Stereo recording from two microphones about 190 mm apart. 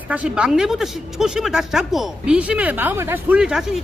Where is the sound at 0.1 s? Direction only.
5° right (ahead or behind).